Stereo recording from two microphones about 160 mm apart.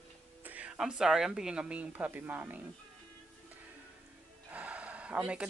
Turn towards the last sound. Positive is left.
turn(degrees=-5)  # may be behind; listen again after turning